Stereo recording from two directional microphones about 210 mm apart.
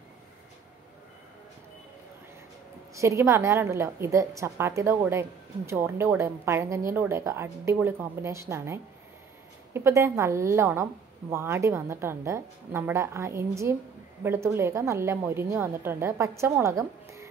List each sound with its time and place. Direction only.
2.9 s a woman's voice: 15° right (ahead or behind)